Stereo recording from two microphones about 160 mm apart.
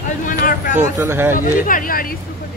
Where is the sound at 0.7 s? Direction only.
15° right (ahead or behind).